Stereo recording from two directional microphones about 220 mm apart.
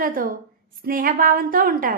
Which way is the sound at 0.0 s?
40° right (ahead or behind).